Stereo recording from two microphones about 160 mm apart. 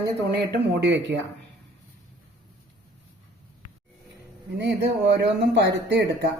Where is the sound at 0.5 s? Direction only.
90° right.